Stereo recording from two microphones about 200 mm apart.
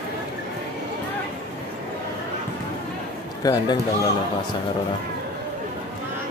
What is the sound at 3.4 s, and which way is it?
Speech, 20° left (ahead or behind).